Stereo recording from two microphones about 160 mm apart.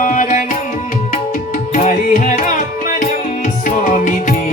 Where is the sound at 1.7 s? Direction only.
50° left (ahead or behind).